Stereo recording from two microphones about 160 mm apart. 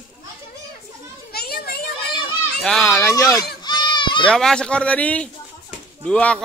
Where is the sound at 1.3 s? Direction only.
75° left (ahead or behind).